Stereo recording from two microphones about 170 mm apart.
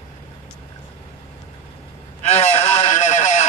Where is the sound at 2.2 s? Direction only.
40° left (ahead or behind).